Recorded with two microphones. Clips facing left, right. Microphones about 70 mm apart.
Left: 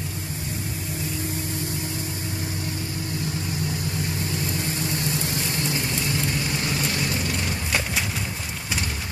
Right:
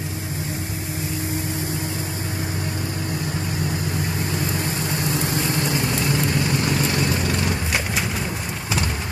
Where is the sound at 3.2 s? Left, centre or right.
Right.